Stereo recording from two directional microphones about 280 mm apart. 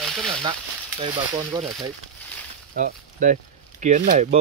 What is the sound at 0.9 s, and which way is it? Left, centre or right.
Speech, centre.